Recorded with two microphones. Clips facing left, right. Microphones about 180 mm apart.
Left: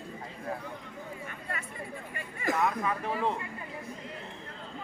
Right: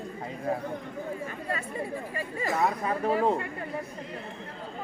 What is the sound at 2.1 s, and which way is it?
Speech, 30° right (ahead or behind).